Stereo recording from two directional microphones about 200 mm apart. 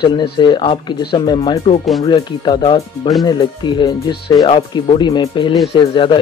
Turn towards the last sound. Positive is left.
turn(degrees=25)  # may be behind; listen again after turning